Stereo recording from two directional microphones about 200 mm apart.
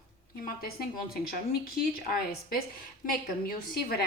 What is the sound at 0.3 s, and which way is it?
A woman's voice, 45° left (ahead or behind).